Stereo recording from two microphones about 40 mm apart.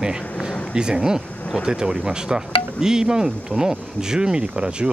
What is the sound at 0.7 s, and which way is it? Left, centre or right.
Speech, centre.